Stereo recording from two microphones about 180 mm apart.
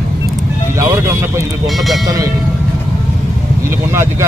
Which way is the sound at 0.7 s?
15° right (ahead or behind).